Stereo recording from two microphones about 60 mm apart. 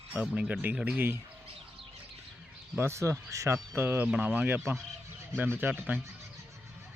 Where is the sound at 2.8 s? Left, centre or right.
Right.